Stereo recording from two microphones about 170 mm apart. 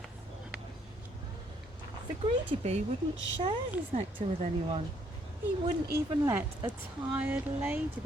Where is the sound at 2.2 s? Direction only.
35° right (ahead or behind).